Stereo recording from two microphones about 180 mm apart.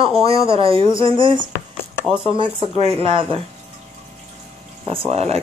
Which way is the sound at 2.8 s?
35° right (ahead or behind).